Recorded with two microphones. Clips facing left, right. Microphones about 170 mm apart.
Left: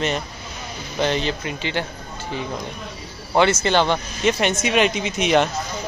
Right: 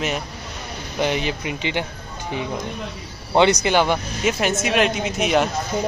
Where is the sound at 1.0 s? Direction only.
10° right (ahead or behind).